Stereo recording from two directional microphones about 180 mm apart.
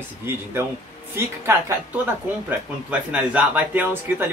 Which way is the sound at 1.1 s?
15° right (ahead or behind).